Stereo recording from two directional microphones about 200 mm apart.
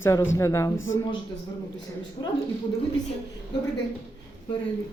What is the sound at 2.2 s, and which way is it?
Speech, 20° left (ahead or behind).